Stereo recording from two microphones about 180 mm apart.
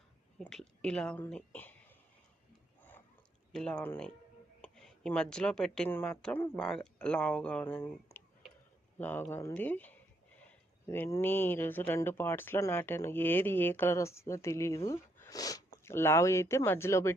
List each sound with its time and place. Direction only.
0.3 s speech: 5° left (ahead or behind)
3.5 s speech: 5° left (ahead or behind)